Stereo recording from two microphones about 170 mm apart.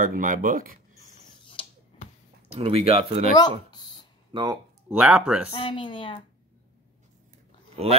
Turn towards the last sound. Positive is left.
turn(degrees=-35)  # may be behind; listen again after turning